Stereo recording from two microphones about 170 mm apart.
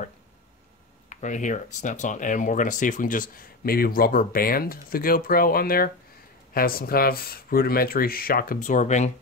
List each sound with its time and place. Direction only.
1.0 s speech: 45° left (ahead or behind)